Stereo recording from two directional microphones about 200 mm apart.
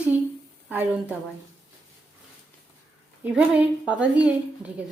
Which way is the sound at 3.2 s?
5° right (ahead or behind).